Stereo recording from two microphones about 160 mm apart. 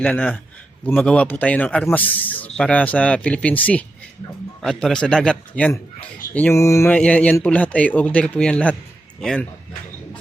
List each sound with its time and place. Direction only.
0.0 s a man's voice: 10° left (ahead or behind)
6.8 s a man's voice: 10° left (ahead or behind)